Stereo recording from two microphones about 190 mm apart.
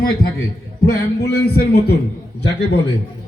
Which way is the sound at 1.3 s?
55° left (ahead or behind).